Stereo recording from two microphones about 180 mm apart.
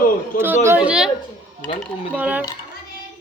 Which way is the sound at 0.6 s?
10° right (ahead or behind).